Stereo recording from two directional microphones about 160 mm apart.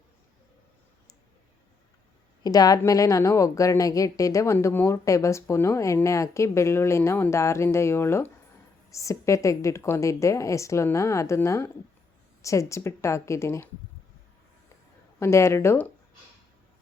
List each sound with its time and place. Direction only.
2.4 s a woman's voice: 25° left (ahead or behind)
15.2 s speech: 15° left (ahead or behind)